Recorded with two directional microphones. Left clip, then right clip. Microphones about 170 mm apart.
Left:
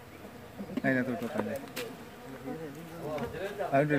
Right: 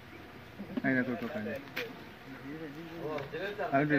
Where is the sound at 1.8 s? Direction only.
20° right (ahead or behind).